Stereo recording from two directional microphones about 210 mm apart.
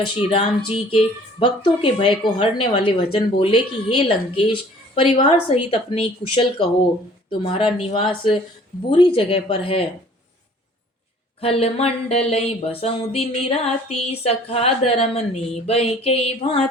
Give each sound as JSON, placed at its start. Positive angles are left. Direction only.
{"t": 0.2, "sound": "music", "side_deg": 25}
{"t": 11.3, "sound": "music", "side_deg": 30}